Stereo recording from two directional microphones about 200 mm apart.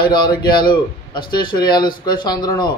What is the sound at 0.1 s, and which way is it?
Speech, 20° left (ahead or behind).